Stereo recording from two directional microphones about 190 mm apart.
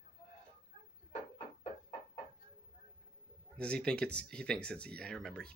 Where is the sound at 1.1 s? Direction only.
30° left (ahead or behind).